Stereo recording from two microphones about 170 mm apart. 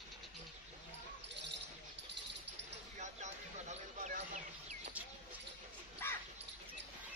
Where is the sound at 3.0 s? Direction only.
45° right (ahead or behind).